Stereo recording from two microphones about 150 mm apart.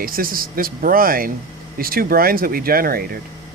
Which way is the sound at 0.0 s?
75° right (ahead or behind).